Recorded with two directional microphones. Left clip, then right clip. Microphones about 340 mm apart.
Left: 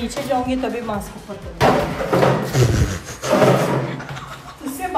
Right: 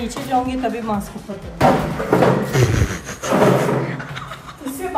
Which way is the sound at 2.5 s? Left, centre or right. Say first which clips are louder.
Right 1 dB; centre.